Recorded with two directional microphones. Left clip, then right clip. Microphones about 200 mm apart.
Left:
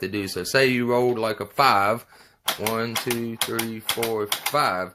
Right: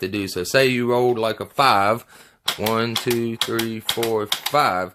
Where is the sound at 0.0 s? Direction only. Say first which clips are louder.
Right 3 dB; 25° right (ahead or behind).